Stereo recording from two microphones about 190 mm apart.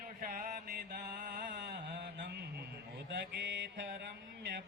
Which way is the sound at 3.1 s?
70° right (ahead or behind).